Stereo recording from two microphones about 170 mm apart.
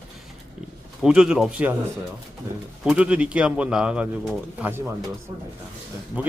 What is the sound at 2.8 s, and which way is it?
Speech, 5° right (ahead or behind).